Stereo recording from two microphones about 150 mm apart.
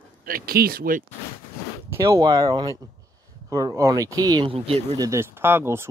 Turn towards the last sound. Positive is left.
turn(degrees=-15)  # may be behind; listen again after turning